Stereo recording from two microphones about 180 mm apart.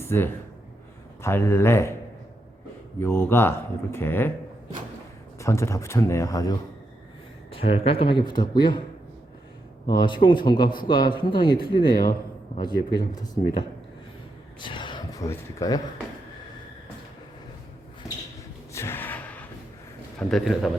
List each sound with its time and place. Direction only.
0.0 s speech: 10° left (ahead or behind)
3.0 s speech: 10° left (ahead or behind)
5.4 s speech: 15° left (ahead or behind)
7.5 s a man's voice: 30° left (ahead or behind)
9.8 s a man's voice: 25° left (ahead or behind)
14.6 s a sound: 25° left (ahead or behind)
15.3 s a man's voice: 20° left (ahead or behind)
18.7 s gasp: 15° left (ahead or behind)
20.1 s a man's voice: centre (ahead or behind)